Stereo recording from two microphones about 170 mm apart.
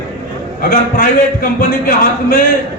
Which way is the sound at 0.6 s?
55° left (ahead or behind).